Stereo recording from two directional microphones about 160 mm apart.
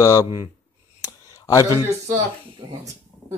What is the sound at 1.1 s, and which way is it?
Clicking, 20° left (ahead or behind).